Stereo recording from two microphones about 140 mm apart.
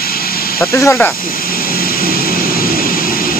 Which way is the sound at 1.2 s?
90° left.